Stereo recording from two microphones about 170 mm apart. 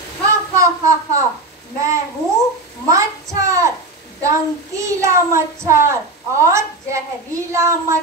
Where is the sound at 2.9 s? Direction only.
20° right (ahead or behind).